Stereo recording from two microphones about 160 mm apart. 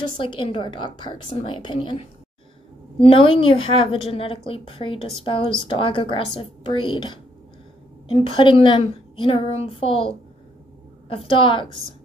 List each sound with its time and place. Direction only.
0.2 s a woman's voice: 30° left (ahead or behind)
8.4 s a woman's voice: 30° left (ahead or behind)